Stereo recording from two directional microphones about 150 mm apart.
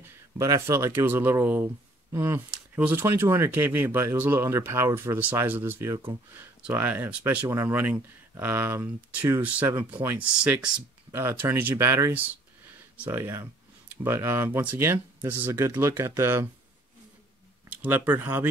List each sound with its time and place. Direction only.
0.0 s speech: 20° right (ahead or behind)
17.8 s speech: 10° right (ahead or behind)